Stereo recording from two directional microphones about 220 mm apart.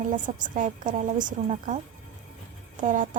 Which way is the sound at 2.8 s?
35° right (ahead or behind).